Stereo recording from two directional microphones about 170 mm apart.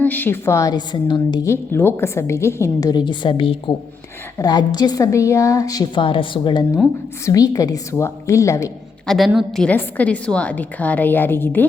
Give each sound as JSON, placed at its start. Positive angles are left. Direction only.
{"t": 0.0, "sound": "a woman's voice", "side_deg": 10}
{"t": 9.0, "sound": "a woman's voice", "side_deg": 0}